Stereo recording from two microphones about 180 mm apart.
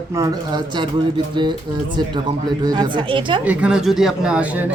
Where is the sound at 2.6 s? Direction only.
25° right (ahead or behind).